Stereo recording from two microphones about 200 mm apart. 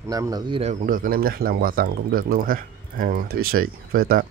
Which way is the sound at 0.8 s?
45° right (ahead or behind).